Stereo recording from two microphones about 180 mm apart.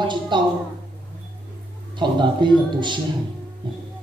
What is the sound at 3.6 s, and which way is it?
Music, 25° right (ahead or behind).